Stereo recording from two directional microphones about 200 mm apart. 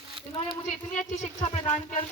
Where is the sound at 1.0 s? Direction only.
40° left (ahead or behind).